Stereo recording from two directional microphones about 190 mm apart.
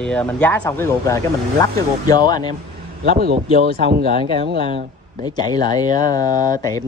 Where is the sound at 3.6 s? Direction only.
50° right (ahead or behind).